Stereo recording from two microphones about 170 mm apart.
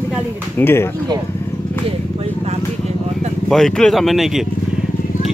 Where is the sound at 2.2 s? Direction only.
40° right (ahead or behind).